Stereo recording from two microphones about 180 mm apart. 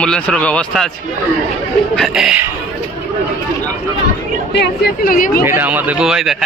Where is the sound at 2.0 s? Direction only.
Centre (ahead or behind).